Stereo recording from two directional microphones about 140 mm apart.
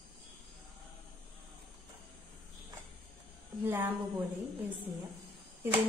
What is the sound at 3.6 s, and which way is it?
Speech, 15° right (ahead or behind).